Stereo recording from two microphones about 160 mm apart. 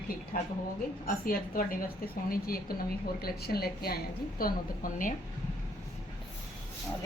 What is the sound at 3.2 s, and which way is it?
Speech, 75° left (ahead or behind).